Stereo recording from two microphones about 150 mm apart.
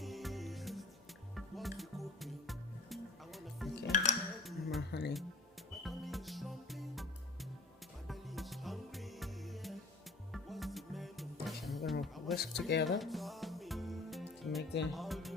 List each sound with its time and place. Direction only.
0.0 s music: centre (ahead or behind)
4.4 s a sound: centre (ahead or behind)
4.9 s music: 90° left
5.7 s music: centre (ahead or behind)
11.9 s a sound: centre (ahead or behind)
12.5 s music: centre (ahead or behind)